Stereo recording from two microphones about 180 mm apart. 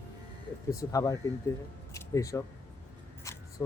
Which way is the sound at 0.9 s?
15° left (ahead or behind).